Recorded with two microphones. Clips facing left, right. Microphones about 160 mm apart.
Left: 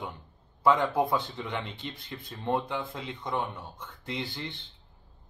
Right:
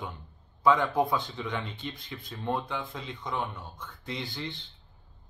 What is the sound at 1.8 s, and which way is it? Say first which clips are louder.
Speech: right 1 dB; 65° left (ahead or behind).